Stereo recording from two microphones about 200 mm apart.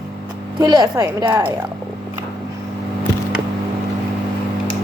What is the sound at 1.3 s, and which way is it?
Speech, 10° right (ahead or behind).